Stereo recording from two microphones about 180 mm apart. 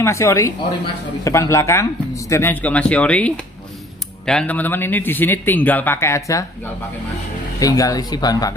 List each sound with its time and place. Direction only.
0.0 s speech: 15° left (ahead or behind)
7.6 s speech: 20° left (ahead or behind)